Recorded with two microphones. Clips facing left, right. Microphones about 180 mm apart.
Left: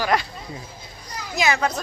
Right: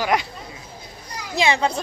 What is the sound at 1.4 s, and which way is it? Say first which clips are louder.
Speech: right 2 dB; 30° right (ahead or behind).